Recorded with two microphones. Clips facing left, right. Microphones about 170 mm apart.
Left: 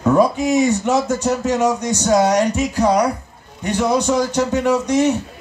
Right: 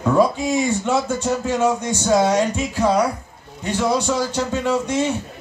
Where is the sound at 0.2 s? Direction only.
15° left (ahead or behind).